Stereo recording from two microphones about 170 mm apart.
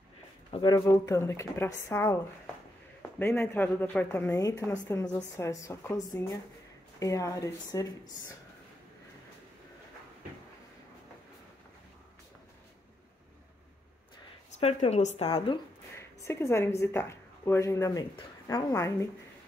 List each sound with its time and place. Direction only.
0.5 s a woman's voice: 25° left (ahead or behind)
3.2 s a woman's voice: 10° left (ahead or behind)
14.6 s a woman's voice: 40° left (ahead or behind)
16.0 s a woman's voice: 15° left (ahead or behind)